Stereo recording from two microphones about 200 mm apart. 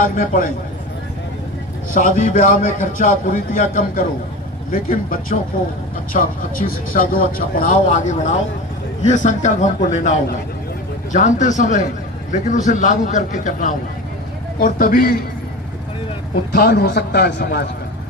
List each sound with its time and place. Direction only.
0.2 s speech: 45° left (ahead or behind)
1.9 s a man's voice: 40° left (ahead or behind)
16.6 s a man's voice: 55° left (ahead or behind)